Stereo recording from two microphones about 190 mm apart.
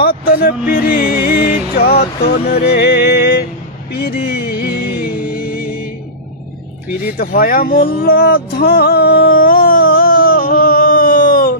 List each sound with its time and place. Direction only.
0.0 s speech: 50° left (ahead or behind)
1.2 s music: 50° left (ahead or behind)
7.2 s music: 50° left (ahead or behind)